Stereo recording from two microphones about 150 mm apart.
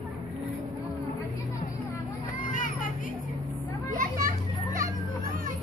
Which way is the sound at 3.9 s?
65° right (ahead or behind).